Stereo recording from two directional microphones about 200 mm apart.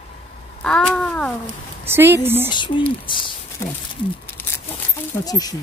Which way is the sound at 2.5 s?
20° left (ahead or behind).